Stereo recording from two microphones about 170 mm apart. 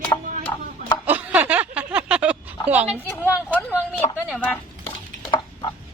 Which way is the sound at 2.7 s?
10° right (ahead or behind).